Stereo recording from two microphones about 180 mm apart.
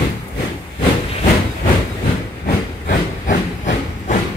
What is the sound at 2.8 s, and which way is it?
Hiss, 45° left (ahead or behind).